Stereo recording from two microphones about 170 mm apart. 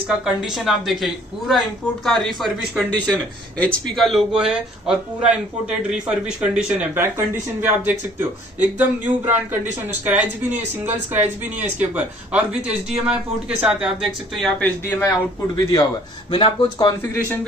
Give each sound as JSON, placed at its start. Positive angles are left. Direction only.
{"t": 0.2, "sound": "speech", "side_deg": 0}
{"t": 14.9, "sound": "a man's voice", "side_deg": 20}